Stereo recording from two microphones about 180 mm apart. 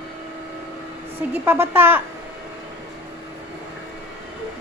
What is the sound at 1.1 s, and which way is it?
Speech, 15° right (ahead or behind).